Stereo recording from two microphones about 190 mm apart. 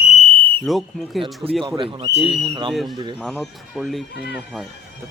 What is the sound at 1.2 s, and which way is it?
Speech, 30° right (ahead or behind).